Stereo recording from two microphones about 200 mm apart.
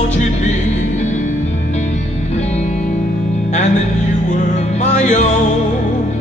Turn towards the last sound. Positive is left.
turn(degrees=35)  # may be behind; listen again after turning